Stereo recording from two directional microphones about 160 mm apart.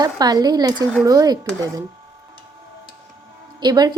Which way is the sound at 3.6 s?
25° right (ahead or behind).